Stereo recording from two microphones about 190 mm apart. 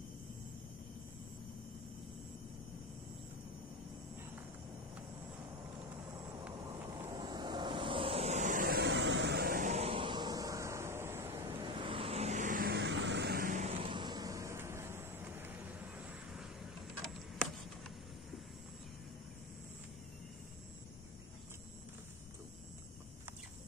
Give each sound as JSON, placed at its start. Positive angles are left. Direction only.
{"t": 6.6, "sound": "vehicle", "side_deg": -20}
{"t": 11.6, "sound": "vehicle", "side_deg": -25}